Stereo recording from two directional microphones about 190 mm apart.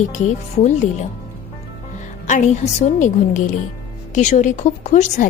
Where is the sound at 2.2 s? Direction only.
40° left (ahead or behind).